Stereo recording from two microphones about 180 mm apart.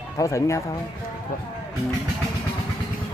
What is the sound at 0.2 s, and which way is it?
Speech, 15° left (ahead or behind).